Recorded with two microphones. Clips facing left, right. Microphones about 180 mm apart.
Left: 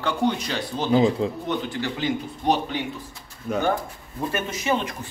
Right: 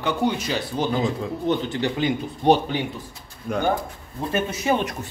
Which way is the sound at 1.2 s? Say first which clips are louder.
Left 3 dB; 30° left (ahead or behind).